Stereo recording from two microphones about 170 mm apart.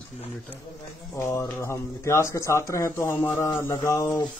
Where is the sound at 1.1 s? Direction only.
15° left (ahead or behind).